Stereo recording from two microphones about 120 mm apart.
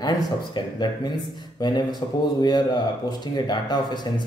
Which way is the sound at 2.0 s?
35° left (ahead or behind).